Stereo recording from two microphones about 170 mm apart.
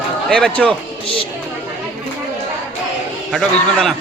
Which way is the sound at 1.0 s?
35° left (ahead or behind).